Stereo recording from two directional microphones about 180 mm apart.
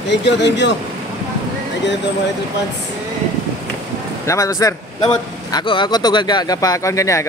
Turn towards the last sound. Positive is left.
turn(degrees=15)  # may be behind; listen again after turning